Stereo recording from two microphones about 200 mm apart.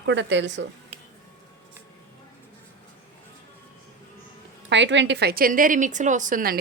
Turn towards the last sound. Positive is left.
turn(degrees=-45)  # may be behind; listen again after turning